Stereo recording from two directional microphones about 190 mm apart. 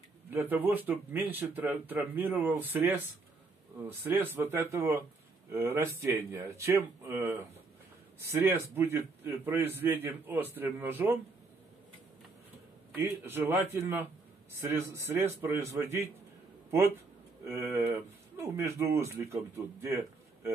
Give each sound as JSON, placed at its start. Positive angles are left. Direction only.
{"t": 0.3, "sound": "a man's voice", "side_deg": -10}
{"t": 13.0, "sound": "a man's voice", "side_deg": -10}
{"t": 17.5, "sound": "a man's voice", "side_deg": -15}